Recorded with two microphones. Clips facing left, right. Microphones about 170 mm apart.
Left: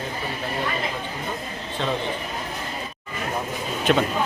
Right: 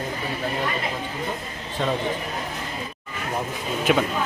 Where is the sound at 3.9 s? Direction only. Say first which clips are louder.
Left 1 dB; 5° right (ahead or behind).